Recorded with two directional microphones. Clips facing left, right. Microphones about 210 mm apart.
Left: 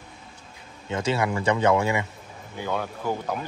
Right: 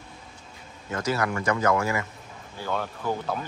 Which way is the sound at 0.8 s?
25° left (ahead or behind).